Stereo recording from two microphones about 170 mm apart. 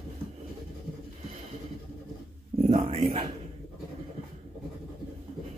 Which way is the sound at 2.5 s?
35° right (ahead or behind).